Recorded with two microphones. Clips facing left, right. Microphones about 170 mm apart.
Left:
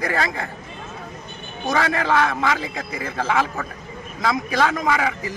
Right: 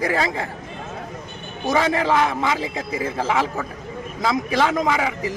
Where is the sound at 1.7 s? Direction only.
25° right (ahead or behind).